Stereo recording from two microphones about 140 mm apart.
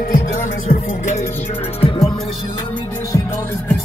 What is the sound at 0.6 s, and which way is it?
Music, 65° left (ahead or behind).